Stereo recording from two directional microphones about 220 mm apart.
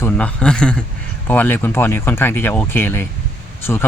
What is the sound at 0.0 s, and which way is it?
Speech, 5° left (ahead or behind).